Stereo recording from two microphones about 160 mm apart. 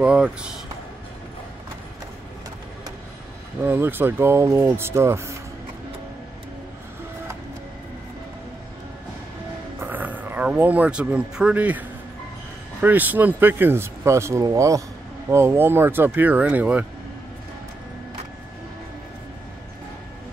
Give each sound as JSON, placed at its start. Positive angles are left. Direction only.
{"t": 0.0, "sound": "speech", "side_deg": -5}
{"t": 3.6, "sound": "speech", "side_deg": -15}
{"t": 9.8, "sound": "speech", "side_deg": -10}
{"t": 12.8, "sound": "speech", "side_deg": -10}